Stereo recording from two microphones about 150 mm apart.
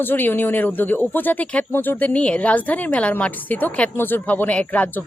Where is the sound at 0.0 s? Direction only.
15° left (ahead or behind).